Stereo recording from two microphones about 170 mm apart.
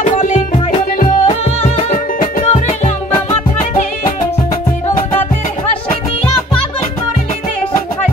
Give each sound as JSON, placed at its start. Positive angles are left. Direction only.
{"t": 0.0, "sound": "music", "side_deg": 45}
{"t": 1.2, "sound": "music", "side_deg": 35}